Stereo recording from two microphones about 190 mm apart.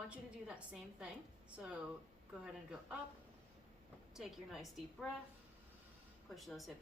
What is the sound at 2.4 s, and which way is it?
Speech, 5° right (ahead or behind).